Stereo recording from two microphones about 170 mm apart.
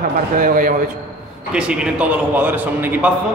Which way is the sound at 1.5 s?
5° right (ahead or behind).